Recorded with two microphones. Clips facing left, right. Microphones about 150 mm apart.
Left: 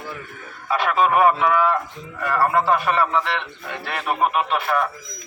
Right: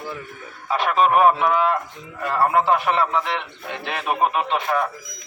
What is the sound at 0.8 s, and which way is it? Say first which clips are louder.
A man's voice: right 1 dB; 20° right (ahead or behind).